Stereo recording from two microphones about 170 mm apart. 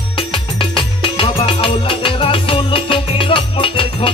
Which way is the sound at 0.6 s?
30° left (ahead or behind).